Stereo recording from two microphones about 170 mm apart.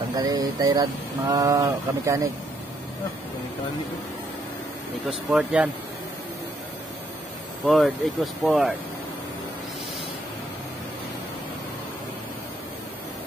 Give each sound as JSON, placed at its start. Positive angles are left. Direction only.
{"t": 0.1, "sound": "speech", "side_deg": -20}
{"t": 5.3, "sound": "speech", "side_deg": -5}
{"t": 7.6, "sound": "speech", "side_deg": 0}